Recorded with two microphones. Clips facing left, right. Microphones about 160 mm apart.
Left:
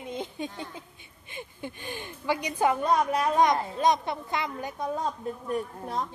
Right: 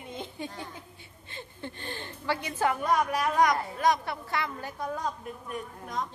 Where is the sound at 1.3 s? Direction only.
15° left (ahead or behind); by 6.0 s 35° left (ahead or behind).